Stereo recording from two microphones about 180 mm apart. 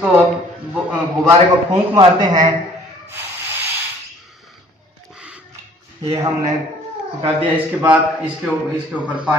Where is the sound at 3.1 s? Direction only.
10° right (ahead or behind).